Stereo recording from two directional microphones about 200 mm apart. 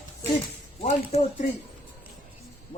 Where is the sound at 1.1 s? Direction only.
30° left (ahead or behind).